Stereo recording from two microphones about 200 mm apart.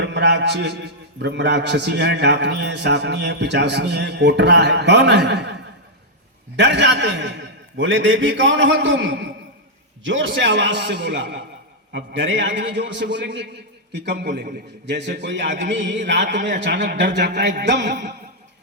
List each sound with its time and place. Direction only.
0.0 s a man's voice: 60° right (ahead or behind)
6.6 s a man's voice: 60° right (ahead or behind)